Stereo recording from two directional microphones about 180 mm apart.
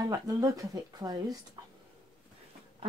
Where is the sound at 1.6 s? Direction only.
25° right (ahead or behind).